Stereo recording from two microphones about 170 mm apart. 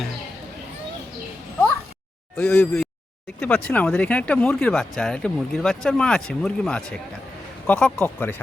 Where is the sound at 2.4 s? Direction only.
15° left (ahead or behind).